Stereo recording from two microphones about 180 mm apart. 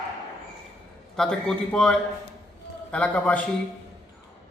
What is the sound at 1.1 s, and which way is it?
A man's voice, 5° left (ahead or behind).